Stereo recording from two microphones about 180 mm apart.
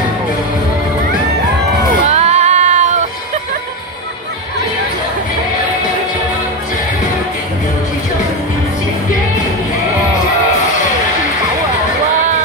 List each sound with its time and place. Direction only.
2.0 s music: 35° right (ahead or behind)